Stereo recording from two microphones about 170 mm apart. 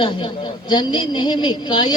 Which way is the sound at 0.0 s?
30° left (ahead or behind).